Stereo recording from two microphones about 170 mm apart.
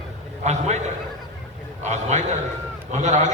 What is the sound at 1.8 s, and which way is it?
A man's voice, 45° right (ahead or behind).